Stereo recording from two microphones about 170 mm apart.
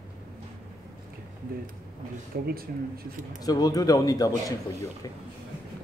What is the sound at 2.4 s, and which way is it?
Speech, 65° right (ahead or behind).